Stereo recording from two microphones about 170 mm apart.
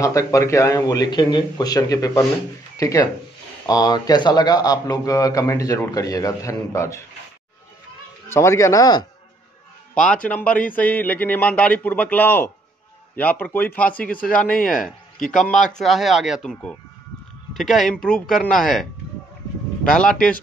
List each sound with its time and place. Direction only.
0.0 s a man's voice: 20° left (ahead or behind)
8.3 s a man's voice: 15° left (ahead or behind)
9.9 s a man's voice: 5° left (ahead or behind)
14.5 s speech: 55° left (ahead or behind)
14.8 s speech: centre (ahead or behind)